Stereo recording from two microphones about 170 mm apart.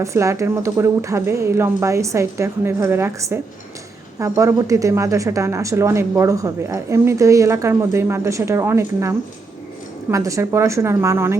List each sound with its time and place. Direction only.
0.0 s speech: 15° right (ahead or behind)